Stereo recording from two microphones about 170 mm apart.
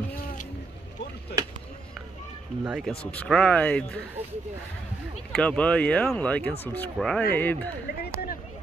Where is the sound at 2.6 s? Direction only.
5° right (ahead or behind).